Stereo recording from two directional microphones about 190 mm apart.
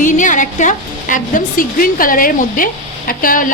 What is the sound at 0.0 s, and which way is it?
A woman's voice, 40° left (ahead or behind).